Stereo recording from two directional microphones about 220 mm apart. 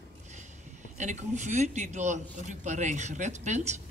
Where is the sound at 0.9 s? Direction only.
30° right (ahead or behind).